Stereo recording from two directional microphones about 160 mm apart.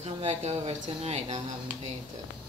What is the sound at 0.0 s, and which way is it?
Speech, 45° right (ahead or behind).